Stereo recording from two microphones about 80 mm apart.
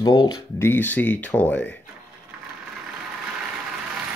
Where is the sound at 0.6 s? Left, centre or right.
Left.